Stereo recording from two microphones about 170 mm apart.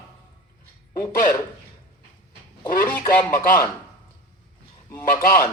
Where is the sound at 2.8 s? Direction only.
15° left (ahead or behind).